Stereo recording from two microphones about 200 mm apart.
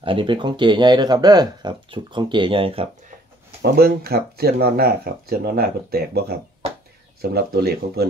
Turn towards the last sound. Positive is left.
turn(degrees=-50)  # may be behind; listen again after turning